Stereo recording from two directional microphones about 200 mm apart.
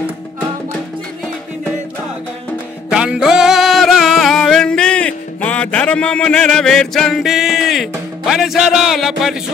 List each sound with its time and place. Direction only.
2.9 s music: 5° right (ahead or behind)